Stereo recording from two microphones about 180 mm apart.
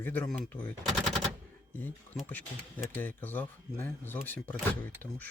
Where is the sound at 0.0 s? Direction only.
10° left (ahead or behind).